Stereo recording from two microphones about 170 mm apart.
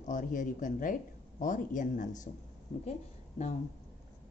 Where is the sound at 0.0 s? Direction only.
50° left (ahead or behind).